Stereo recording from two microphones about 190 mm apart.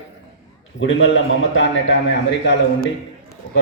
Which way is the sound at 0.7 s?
85° left.